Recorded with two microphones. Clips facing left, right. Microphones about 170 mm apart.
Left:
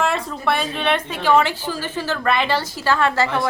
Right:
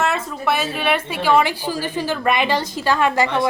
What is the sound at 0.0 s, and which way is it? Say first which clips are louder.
A woman's voice: even; 5° right (ahead or behind).